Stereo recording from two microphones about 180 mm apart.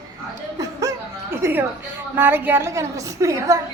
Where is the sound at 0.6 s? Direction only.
20° right (ahead or behind).